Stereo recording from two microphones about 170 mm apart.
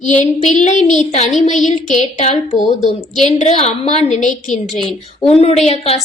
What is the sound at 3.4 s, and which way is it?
A woman's voice, 40° left (ahead or behind).